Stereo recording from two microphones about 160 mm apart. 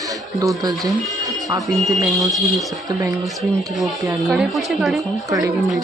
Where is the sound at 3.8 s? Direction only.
Centre (ahead or behind).